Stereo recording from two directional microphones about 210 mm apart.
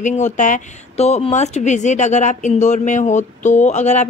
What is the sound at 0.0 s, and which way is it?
Speech, 35° left (ahead or behind).